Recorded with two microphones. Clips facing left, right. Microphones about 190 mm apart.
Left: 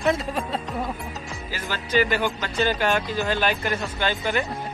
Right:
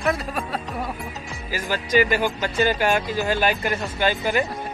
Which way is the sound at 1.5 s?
10° right (ahead or behind).